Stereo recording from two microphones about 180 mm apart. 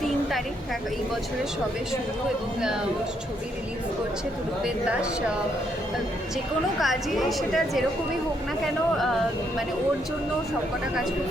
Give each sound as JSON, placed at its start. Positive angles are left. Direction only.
{"t": 4.6, "sound": "speech", "side_deg": -5}
{"t": 6.7, "sound": "a woman's voice", "side_deg": 0}